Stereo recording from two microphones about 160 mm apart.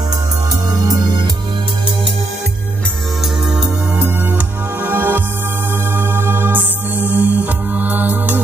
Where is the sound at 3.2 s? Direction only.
5° right (ahead or behind).